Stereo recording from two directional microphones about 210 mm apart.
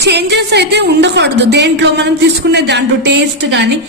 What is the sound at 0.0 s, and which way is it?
A woman's voice, 50° right (ahead or behind).